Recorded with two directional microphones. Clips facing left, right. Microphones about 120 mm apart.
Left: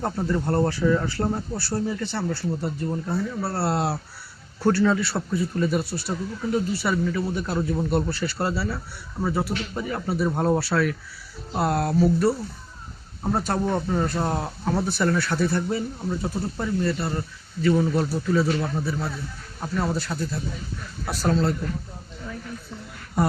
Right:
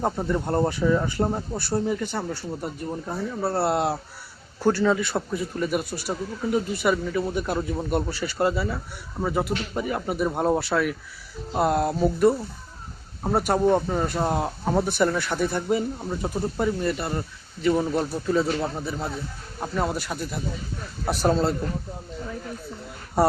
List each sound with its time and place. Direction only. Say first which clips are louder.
0.0 s speech: even; 15° right (ahead or behind)
21.0 s speech: right 3 dB; 25° right (ahead or behind)